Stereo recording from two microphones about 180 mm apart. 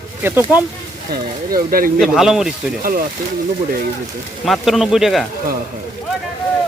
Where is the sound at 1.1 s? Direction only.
55° right (ahead or behind).